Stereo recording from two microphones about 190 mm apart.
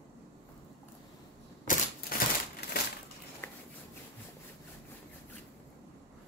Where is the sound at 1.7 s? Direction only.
50° left (ahead or behind).